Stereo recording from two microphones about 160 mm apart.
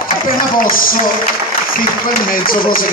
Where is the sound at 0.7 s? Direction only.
60° left (ahead or behind).